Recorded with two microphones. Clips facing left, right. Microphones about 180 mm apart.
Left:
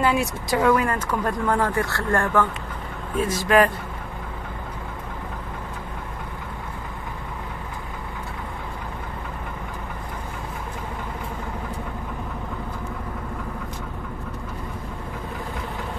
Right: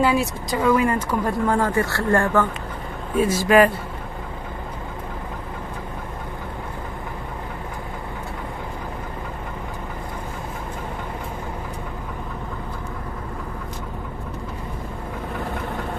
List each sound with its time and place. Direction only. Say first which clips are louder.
0.0 s speech: right 2 dB; centre (ahead or behind)